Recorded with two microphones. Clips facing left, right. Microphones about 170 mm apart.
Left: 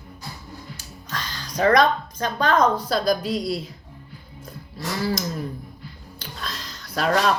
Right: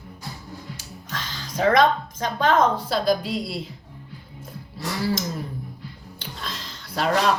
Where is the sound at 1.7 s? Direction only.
25° right (ahead or behind).